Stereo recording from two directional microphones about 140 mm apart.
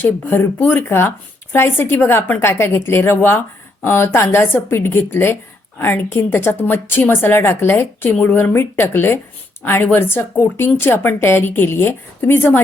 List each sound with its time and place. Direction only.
0.0 s a woman's voice: 15° left (ahead or behind)